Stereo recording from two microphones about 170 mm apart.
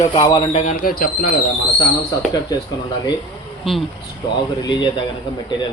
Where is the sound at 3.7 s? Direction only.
Centre (ahead or behind).